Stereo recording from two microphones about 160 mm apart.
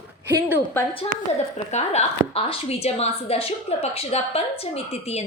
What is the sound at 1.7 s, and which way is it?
A woman's voice, 45° left (ahead or behind).